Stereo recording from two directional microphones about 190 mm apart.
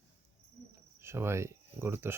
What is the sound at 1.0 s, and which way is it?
Speech, 15° right (ahead or behind).